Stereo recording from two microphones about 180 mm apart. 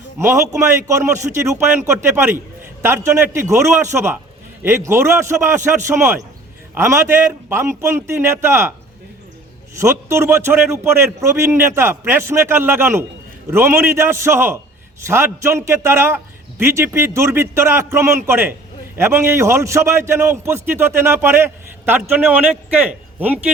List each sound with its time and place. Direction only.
0.2 s a man's voice: 15° right (ahead or behind)
9.7 s a man's voice: 15° right (ahead or behind)